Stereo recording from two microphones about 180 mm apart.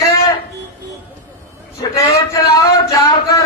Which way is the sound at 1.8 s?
20° left (ahead or behind).